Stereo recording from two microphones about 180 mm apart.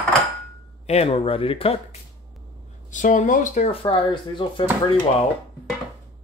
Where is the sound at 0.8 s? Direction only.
35° left (ahead or behind).